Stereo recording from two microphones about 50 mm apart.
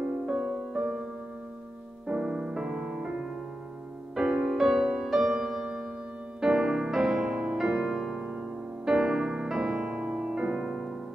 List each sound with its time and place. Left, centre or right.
0.3 s music: centre
2.0 s music: centre
4.5 s music: centre
4.7 s music: centre
8.2 s music: centre